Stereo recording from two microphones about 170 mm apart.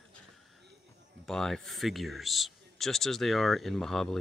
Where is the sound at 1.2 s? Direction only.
Centre (ahead or behind).